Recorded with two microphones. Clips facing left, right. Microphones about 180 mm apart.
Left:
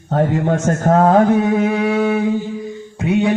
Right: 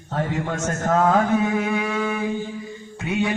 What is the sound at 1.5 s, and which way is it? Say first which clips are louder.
Music: left 7 dB; 20° left (ahead or behind).